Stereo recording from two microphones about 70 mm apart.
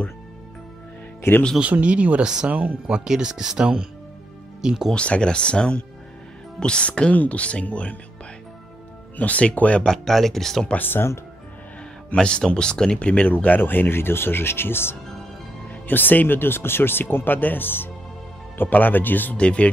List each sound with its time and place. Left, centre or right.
1.3 s speech: left
1.6 s speech: centre
3.0 s speech: centre
4.9 s speech: centre
9.1 s speech: left
9.8 s speech: centre
10.7 s speech: left
12.1 s speech: centre